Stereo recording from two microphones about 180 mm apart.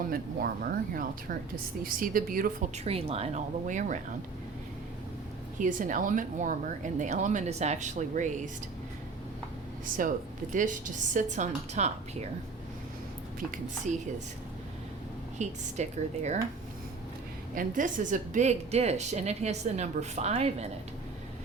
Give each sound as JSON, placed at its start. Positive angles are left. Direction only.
{"t": 0.1, "sound": "speech", "side_deg": -55}
{"t": 5.5, "sound": "speech", "side_deg": -45}
{"t": 9.8, "sound": "speech", "side_deg": -50}
{"t": 13.9, "sound": "a woman's voice", "side_deg": -40}
{"t": 15.4, "sound": "a woman's voice", "side_deg": -40}
{"t": 17.5, "sound": "a woman's voice", "side_deg": -45}